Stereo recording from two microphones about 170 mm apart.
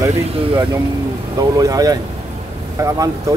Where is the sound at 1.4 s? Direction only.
20° right (ahead or behind).